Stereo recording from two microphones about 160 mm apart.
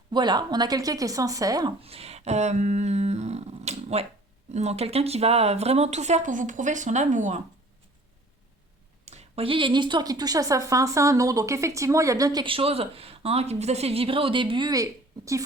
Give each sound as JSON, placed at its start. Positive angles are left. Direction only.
{"t": 0.1, "sound": "a woman's voice", "side_deg": -25}
{"t": 1.8, "sound": "a sound", "side_deg": -40}
{"t": 4.5, "sound": "speech", "side_deg": -40}
{"t": 9.0, "sound": "a woman's voice", "side_deg": -40}